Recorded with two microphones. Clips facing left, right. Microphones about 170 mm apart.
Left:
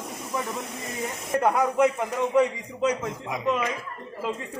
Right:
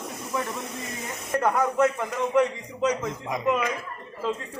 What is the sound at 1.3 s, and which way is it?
A man's voice, 15° left (ahead or behind).